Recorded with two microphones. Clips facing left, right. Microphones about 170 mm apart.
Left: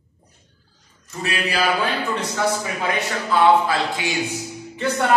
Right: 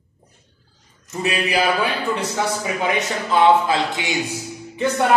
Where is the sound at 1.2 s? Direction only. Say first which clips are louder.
Right 3 dB; 20° right (ahead or behind).